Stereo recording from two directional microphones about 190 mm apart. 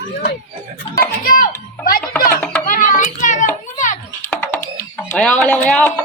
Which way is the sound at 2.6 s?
45° left (ahead or behind).